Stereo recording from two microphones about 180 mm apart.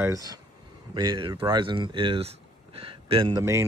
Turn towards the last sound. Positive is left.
turn(degrees=-20)  # may be behind; listen again after turning